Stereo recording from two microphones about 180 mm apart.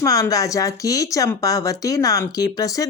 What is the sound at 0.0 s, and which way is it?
Speech, 20° left (ahead or behind).